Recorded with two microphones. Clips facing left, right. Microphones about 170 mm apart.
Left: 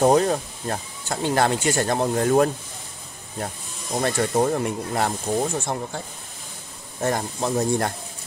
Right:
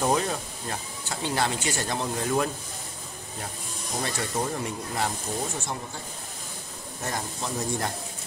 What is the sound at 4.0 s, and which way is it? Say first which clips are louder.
Speech: left 9 dB; 55° left (ahead or behind).